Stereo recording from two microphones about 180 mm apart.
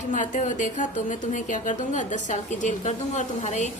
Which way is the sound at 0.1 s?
45° left (ahead or behind).